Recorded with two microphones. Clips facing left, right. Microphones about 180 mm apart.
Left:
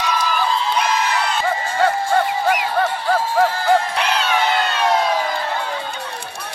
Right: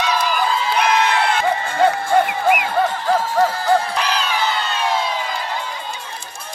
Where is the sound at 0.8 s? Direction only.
60° right (ahead or behind).